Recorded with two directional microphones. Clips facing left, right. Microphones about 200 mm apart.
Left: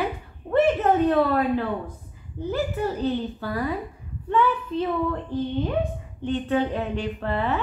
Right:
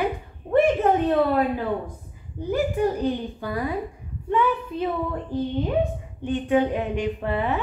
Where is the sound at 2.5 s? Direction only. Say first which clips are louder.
Right 4 dB; 15° right (ahead or behind).